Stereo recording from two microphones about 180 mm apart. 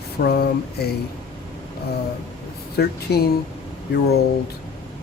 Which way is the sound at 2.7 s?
60° left (ahead or behind).